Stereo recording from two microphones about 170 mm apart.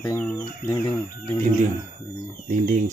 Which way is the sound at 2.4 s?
50° right (ahead or behind).